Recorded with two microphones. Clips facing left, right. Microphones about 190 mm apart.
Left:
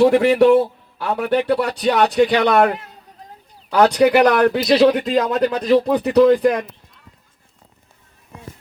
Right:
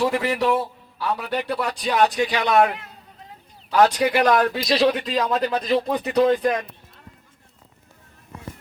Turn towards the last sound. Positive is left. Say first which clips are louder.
# left 6 dB
turn(degrees=60)  # may be behind; listen again after turning